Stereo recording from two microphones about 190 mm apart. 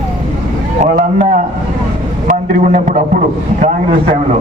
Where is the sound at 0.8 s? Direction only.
40° right (ahead or behind).